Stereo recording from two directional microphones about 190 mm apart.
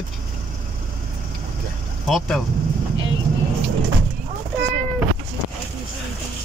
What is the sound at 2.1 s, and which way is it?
Speech, centre (ahead or behind).